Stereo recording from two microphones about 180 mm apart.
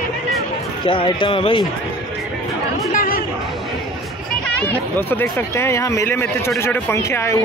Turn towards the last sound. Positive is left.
turn(degrees=15)  # may be behind; listen again after turning